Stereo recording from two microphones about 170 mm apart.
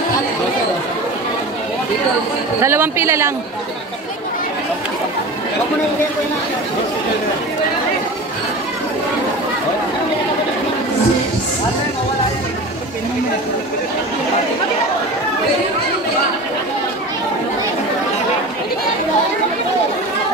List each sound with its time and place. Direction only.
2.6 s speech: 15° right (ahead or behind)